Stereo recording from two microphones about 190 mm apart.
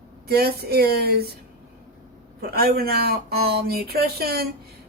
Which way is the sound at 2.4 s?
55° right (ahead or behind).